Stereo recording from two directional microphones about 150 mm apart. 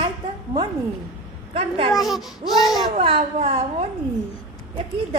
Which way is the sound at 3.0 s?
40° right (ahead or behind).